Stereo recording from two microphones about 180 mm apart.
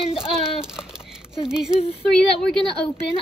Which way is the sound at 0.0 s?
30° left (ahead or behind).